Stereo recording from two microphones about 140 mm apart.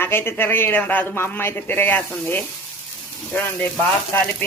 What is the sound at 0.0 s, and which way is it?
Speech, 15° left (ahead or behind).